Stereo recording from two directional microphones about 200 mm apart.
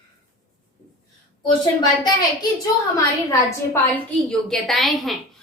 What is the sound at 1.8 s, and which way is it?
Speech, 20° left (ahead or behind).